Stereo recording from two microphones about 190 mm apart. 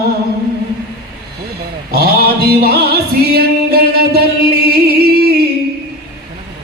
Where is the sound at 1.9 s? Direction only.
55° right (ahead or behind).